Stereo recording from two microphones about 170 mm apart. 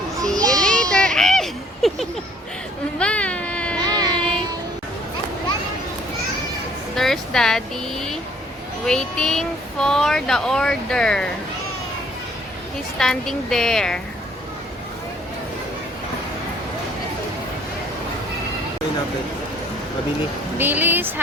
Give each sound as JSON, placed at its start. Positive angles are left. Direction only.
{"t": 0.3, "sound": "children playing", "side_deg": -20}
{"t": 0.6, "sound": "a sound", "side_deg": 5}
{"t": 3.8, "sound": "music", "side_deg": -25}
{"t": 6.9, "sound": "a sound", "side_deg": 0}
{"t": 8.9, "sound": "speech", "side_deg": 5}
{"t": 13.0, "sound": "speech", "side_deg": 5}
{"t": 20.6, "sound": "speech", "side_deg": -10}